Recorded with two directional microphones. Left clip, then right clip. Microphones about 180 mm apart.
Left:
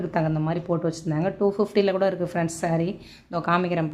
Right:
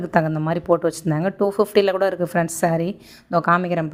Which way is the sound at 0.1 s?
40° right (ahead or behind).